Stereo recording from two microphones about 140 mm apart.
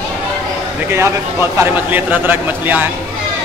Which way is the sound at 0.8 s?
20° right (ahead or behind).